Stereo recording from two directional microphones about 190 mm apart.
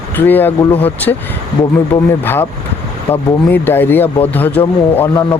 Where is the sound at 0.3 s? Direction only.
10° left (ahead or behind).